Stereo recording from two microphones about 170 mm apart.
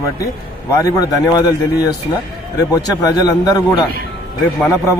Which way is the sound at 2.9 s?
20° left (ahead or behind).